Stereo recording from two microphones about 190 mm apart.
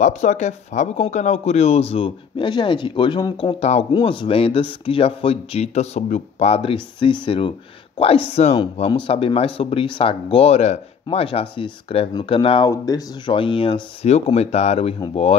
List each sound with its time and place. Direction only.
0.0 s speech: 40° left (ahead or behind)